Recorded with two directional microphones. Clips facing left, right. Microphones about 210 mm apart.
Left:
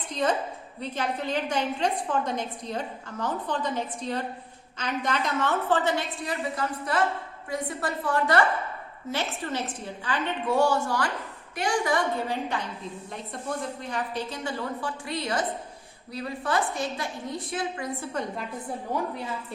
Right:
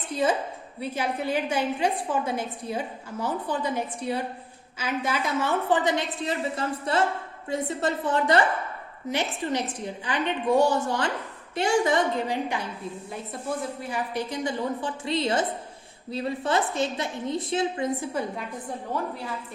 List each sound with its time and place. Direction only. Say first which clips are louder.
0.1 s a woman's voice: right 2 dB; 5° right (ahead or behind); by 18.1 s 20° right (ahead or behind)
18.1 s a woman's voice: right 2 dB; 5° right (ahead or behind)